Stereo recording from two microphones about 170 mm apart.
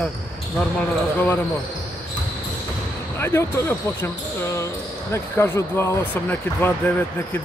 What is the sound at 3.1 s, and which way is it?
Speech, 15° left (ahead or behind).